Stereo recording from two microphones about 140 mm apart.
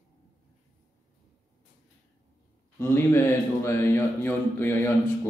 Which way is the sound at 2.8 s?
15° left (ahead or behind).